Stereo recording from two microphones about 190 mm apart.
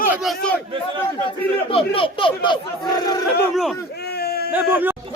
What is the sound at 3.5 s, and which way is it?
Speech, centre (ahead or behind).